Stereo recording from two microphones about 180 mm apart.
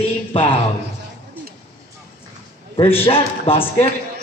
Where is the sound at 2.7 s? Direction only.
30° left (ahead or behind).